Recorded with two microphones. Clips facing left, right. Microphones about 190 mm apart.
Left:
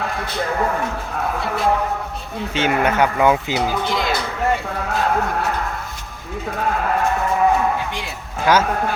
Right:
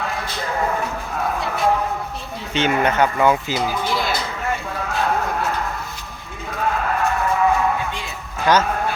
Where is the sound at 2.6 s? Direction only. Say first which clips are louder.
Even; 10° left (ahead or behind).